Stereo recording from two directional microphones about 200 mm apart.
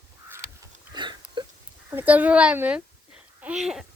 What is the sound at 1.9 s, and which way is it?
A child's voice, 10° right (ahead or behind).